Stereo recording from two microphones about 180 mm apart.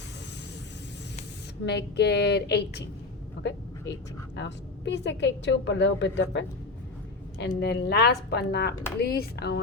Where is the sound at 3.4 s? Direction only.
80° left.